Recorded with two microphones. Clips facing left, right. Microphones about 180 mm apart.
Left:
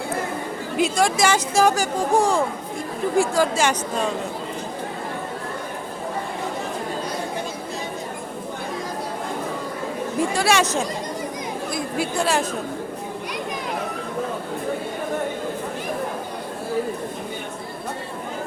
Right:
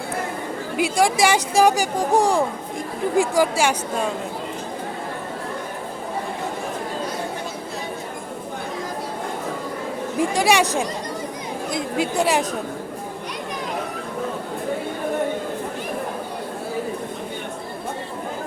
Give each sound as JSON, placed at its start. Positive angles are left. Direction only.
{"t": 0.8, "sound": "speech", "side_deg": -15}
{"t": 10.2, "sound": "speech", "side_deg": -15}
{"t": 11.7, "sound": "chatter", "side_deg": -20}